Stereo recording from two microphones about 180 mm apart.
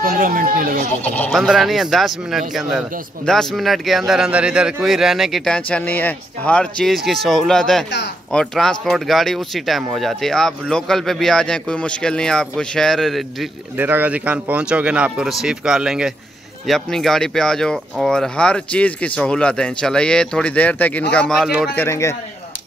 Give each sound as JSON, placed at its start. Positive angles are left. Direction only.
{"t": 0.0, "sound": "speech", "side_deg": -50}
{"t": 1.0, "sound": "speech", "side_deg": 10}
{"t": 13.7, "sound": "a man's voice", "side_deg": -10}
{"t": 21.7, "sound": "speech", "side_deg": 15}